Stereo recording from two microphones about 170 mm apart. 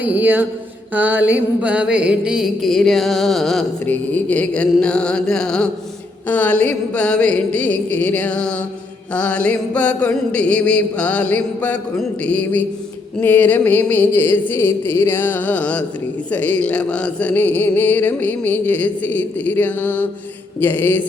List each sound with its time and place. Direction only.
0.0 s speech: 10° right (ahead or behind)
0.9 s music: 10° right (ahead or behind)
6.2 s a sound: 10° left (ahead or behind)